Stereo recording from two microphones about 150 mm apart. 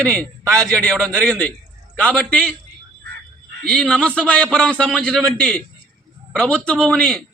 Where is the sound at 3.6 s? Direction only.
5° left (ahead or behind).